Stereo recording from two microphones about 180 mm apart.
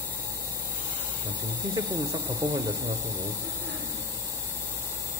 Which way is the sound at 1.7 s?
20° right (ahead or behind).